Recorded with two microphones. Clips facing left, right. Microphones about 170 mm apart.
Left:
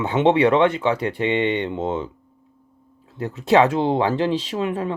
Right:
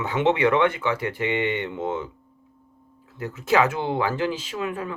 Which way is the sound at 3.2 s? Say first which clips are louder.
Left 5 dB; 20° left (ahead or behind).